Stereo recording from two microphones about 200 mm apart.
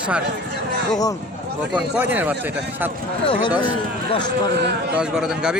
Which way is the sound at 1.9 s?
10° right (ahead or behind).